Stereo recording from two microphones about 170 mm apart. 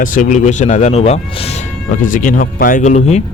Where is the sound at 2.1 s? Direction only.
50° left (ahead or behind).